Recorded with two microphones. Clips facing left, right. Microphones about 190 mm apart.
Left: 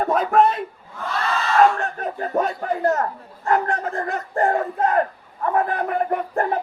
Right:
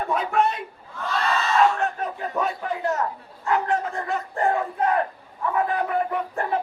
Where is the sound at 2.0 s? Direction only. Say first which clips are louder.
Left 4 dB; 45° left (ahead or behind).